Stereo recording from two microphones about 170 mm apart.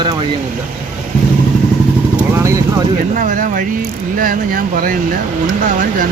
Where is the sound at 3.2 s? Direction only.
50° right (ahead or behind).